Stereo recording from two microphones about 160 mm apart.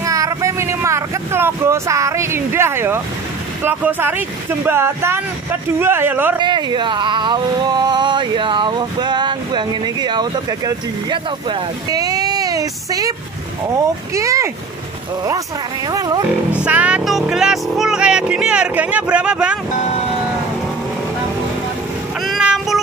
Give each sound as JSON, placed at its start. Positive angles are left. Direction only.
{"t": 0.0, "sound": "speech", "side_deg": -20}
{"t": 6.3, "sound": "speech", "side_deg": -30}
{"t": 14.1, "sound": "speech", "side_deg": -20}
{"t": 15.9, "sound": "speech", "side_deg": -25}
{"t": 16.6, "sound": "speech", "side_deg": -5}
{"t": 22.2, "sound": "meow", "side_deg": 0}